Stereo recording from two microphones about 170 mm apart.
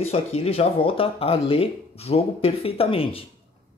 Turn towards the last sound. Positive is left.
turn(degrees=35)  # may be behind; listen again after turning